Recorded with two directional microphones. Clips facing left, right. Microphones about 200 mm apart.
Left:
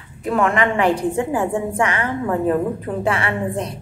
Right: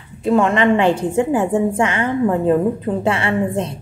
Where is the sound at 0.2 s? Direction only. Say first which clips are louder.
Right 4 dB; 25° right (ahead or behind).